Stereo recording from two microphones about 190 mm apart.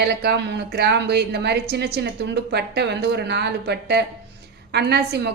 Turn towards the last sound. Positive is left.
turn(degrees=-60)  # may be behind; listen again after turning